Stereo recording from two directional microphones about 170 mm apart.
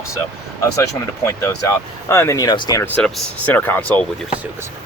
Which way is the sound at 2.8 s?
10° left (ahead or behind).